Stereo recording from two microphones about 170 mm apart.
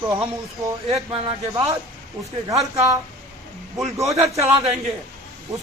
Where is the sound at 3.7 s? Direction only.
15° right (ahead or behind).